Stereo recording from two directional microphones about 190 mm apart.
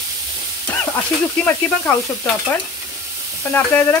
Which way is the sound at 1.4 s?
10° left (ahead or behind).